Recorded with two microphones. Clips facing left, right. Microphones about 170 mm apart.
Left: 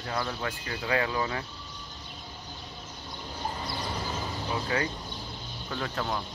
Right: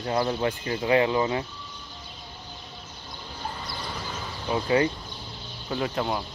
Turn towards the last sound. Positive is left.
turn(degrees=-15)  # may be behind; listen again after turning